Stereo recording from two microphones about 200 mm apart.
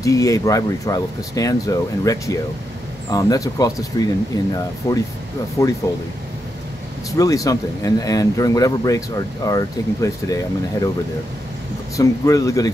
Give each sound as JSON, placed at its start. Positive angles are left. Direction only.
{"t": 0.0, "sound": "speech", "side_deg": 15}
{"t": 7.1, "sound": "speech", "side_deg": 15}
{"t": 12.0, "sound": "speech", "side_deg": 15}